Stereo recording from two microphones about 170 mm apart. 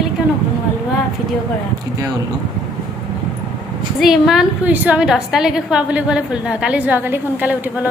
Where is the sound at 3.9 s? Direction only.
Centre (ahead or behind).